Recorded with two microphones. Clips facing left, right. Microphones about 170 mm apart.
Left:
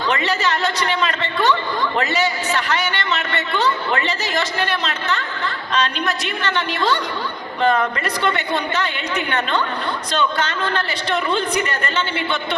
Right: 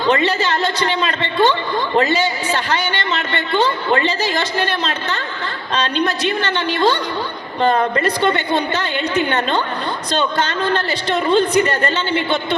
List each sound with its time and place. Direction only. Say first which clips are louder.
0.0 s a woman's voice: right 4 dB; 30° right (ahead or behind)